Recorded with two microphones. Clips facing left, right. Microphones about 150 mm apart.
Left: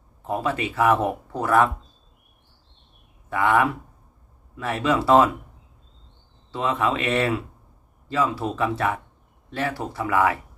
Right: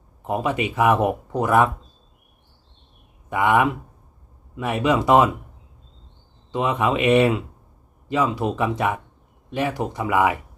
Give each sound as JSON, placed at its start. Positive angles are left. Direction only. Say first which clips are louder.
{"t": 0.2, "sound": "speech", "louder": "right 2 dB", "side_deg": -15}
{"t": 3.3, "sound": "speech", "louder": "right 2 dB", "side_deg": -15}
{"t": 6.5, "sound": "speech", "louder": "right 2 dB", "side_deg": -15}